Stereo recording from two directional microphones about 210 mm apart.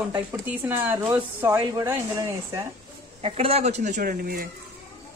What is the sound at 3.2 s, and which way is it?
Speech, 30° right (ahead or behind).